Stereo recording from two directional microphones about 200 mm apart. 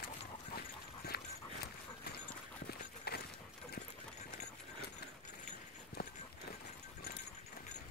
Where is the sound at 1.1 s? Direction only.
50° left (ahead or behind).